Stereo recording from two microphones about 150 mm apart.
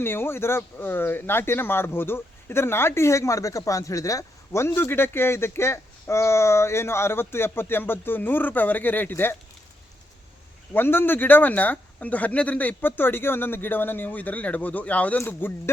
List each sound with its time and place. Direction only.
0.0 s speech: 15° left (ahead or behind)
10.8 s speech: 15° left (ahead or behind)